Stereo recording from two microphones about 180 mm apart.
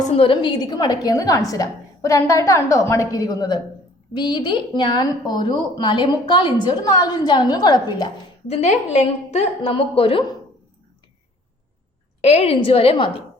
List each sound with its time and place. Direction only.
0.2 s a woman's voice: 30° left (ahead or behind)
8.4 s a woman's voice: 40° left (ahead or behind)
12.2 s a woman's voice: 35° left (ahead or behind)